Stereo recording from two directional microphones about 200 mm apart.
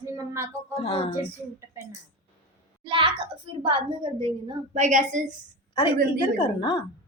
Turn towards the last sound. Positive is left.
turn(degrees=25)  # may be behind; listen again after turning